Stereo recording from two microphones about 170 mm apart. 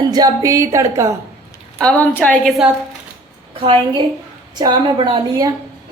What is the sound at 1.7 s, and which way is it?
Speech, 5° left (ahead or behind).